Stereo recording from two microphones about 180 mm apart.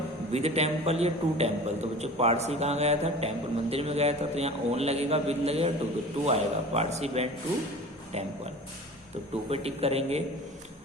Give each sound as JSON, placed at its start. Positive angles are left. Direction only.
{"t": 0.3, "sound": "a man's voice", "side_deg": -35}
{"t": 9.5, "sound": "a man's voice", "side_deg": -35}